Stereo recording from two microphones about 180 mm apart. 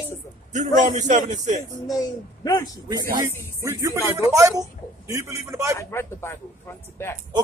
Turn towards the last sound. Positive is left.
turn(degrees=15)  # may be behind; listen again after turning